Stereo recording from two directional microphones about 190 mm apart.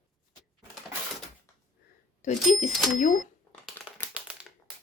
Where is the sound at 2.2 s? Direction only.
40° left (ahead or behind).